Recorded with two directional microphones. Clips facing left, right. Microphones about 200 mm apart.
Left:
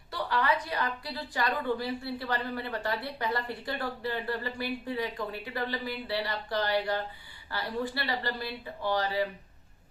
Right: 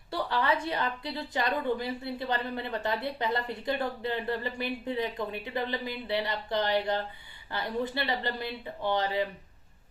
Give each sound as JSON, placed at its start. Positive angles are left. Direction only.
{"t": 0.1, "sound": "a woman's voice", "side_deg": -25}